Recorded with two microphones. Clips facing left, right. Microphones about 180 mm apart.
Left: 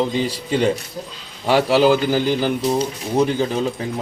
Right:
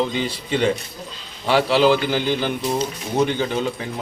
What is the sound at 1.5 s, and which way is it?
Speech, 10° left (ahead or behind).